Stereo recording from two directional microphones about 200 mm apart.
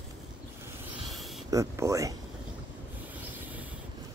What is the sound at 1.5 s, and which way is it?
Speech, 15° right (ahead or behind).